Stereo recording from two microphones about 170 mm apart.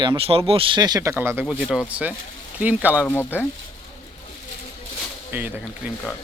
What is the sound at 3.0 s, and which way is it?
Speech, 10° left (ahead or behind).